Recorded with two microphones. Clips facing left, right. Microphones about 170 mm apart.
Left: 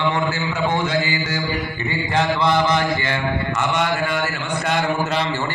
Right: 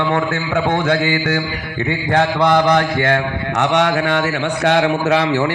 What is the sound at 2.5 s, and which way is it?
Mantra, 65° right (ahead or behind).